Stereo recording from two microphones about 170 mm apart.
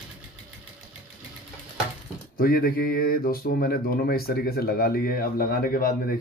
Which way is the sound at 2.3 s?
60° left (ahead or behind).